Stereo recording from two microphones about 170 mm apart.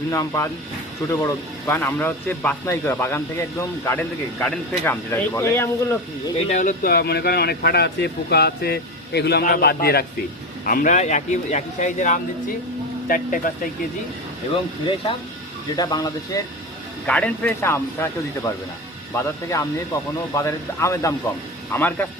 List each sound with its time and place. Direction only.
0.1 s speech: 15° left (ahead or behind)
6.5 s speech: 50° left (ahead or behind); by 10.1 s 65° left (ahead or behind)
10.7 s speech: 50° left (ahead or behind)
15.7 s speech: 20° left (ahead or behind)
17.1 s speech: 5° left (ahead or behind)